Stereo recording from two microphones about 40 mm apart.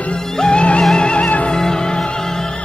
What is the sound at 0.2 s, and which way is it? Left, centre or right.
Music, centre.